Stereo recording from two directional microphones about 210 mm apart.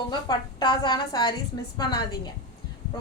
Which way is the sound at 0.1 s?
20° left (ahead or behind).